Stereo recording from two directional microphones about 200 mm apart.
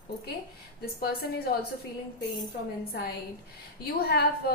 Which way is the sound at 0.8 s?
50° left (ahead or behind).